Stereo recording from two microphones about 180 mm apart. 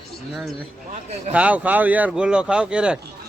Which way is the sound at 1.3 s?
10° right (ahead or behind).